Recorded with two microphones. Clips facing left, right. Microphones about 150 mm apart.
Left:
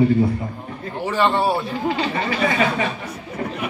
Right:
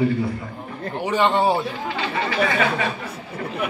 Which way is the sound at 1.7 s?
35° left (ahead or behind).